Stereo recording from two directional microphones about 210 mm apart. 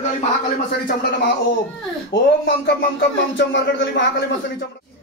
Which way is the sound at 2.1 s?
55° left (ahead or behind).